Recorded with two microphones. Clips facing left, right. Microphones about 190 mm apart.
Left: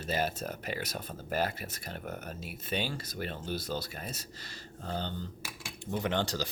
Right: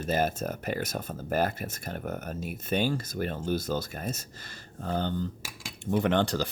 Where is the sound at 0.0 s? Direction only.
50° right (ahead or behind).